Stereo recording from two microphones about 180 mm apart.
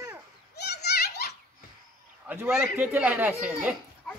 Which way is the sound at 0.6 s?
65° left (ahead or behind).